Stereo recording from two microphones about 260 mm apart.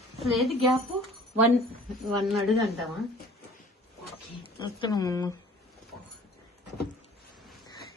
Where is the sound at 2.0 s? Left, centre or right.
Centre.